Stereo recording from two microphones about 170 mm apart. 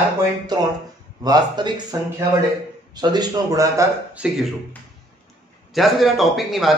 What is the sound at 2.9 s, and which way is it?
Speech, 25° right (ahead or behind).